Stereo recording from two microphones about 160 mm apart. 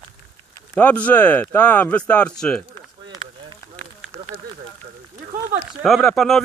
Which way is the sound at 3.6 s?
20° left (ahead or behind).